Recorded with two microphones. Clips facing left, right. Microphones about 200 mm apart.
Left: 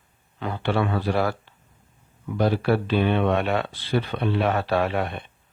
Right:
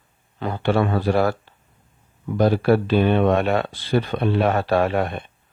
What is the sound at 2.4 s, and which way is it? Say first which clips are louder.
Speech: right 4 dB; 45° right (ahead or behind).